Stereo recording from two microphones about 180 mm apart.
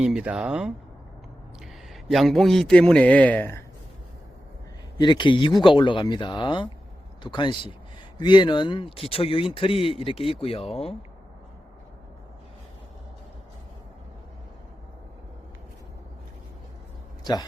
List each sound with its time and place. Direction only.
0.0 s a man's voice: 5° right (ahead or behind)
1.9 s a man's voice: centre (ahead or behind)
4.9 s speech: 25° left (ahead or behind)